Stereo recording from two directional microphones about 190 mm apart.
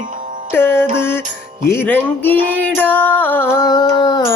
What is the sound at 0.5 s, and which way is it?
Music, 10° left (ahead or behind).